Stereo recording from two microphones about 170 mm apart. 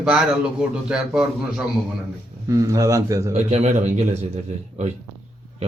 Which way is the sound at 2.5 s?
20° right (ahead or behind).